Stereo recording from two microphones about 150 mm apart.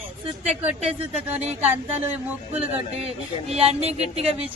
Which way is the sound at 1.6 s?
10° right (ahead or behind).